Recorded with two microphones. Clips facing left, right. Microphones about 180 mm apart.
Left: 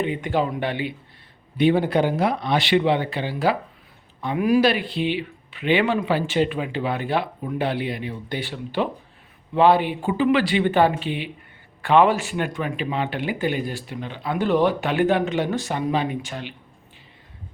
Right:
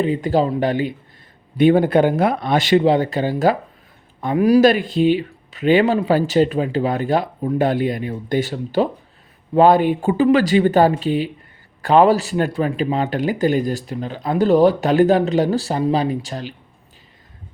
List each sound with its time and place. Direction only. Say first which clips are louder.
0.0 s speech: right 5 dB; 35° right (ahead or behind)